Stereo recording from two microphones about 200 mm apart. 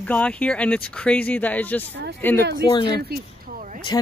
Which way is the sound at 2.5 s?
20° left (ahead or behind).